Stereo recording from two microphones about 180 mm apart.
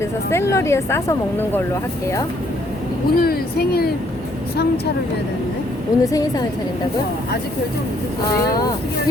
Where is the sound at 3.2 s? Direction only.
60° left (ahead or behind).